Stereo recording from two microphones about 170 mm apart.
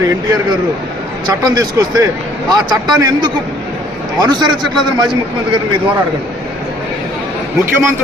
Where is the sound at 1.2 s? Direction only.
20° right (ahead or behind).